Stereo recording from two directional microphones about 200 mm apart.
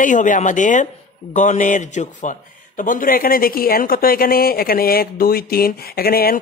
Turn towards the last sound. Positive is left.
turn(degrees=50)  # may be behind; listen again after turning